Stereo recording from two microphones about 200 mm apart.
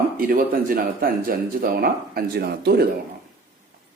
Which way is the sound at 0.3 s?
45° right (ahead or behind).